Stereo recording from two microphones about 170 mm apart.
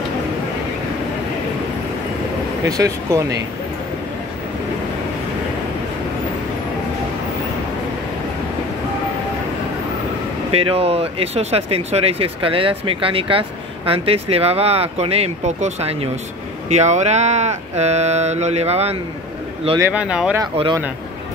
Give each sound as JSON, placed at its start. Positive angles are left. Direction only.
{"t": 2.6, "sound": "speech", "side_deg": -20}
{"t": 10.5, "sound": "speech", "side_deg": -35}
{"t": 19.8, "sound": "speech", "side_deg": -5}
{"t": 20.5, "sound": "speech", "side_deg": -35}